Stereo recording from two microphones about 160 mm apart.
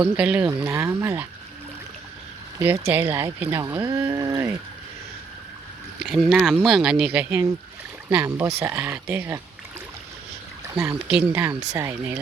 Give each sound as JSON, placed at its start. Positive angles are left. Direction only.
{"t": 0.0, "sound": "speech", "side_deg": -10}
{"t": 2.6, "sound": "speech", "side_deg": -15}
{"t": 6.0, "sound": "speech", "side_deg": 0}
{"t": 10.8, "sound": "speech", "side_deg": -10}